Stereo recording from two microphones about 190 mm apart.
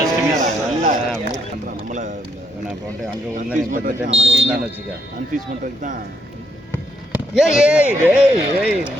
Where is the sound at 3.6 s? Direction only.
45° right (ahead or behind).